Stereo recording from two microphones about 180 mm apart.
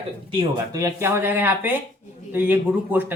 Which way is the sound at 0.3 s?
30° right (ahead or behind).